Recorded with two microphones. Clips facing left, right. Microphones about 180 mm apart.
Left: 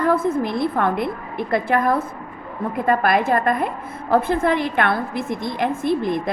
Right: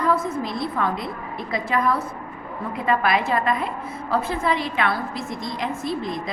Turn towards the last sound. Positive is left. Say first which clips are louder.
# left 6 dB
turn(degrees=55)  # may be behind; listen again after turning